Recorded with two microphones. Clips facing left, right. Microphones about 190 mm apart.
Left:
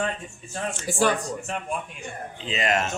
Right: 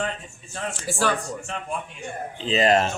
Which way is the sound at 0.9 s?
15° left (ahead or behind).